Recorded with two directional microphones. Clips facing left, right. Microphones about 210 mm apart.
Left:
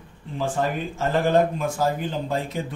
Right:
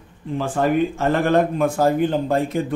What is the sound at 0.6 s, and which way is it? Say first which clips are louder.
Speech: right 9 dB; 60° right (ahead or behind).